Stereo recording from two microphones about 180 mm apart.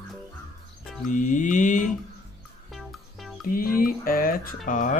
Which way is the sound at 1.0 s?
45° left (ahead or behind).